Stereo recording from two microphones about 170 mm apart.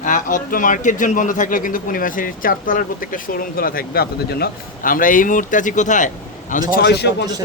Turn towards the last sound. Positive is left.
turn(degrees=75)  # may be behind; listen again after turning